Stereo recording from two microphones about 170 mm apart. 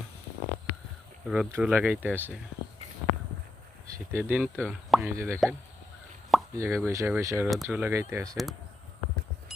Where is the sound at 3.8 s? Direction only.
15° right (ahead or behind).